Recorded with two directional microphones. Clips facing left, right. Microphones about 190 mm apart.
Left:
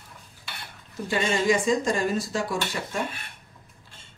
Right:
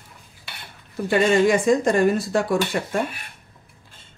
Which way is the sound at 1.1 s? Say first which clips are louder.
Right 6 dB; 60° right (ahead or behind).